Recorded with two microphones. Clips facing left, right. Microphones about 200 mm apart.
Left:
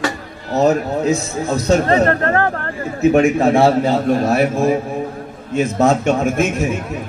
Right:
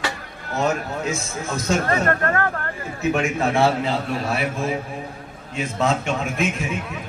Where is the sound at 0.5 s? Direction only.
40° left (ahead or behind).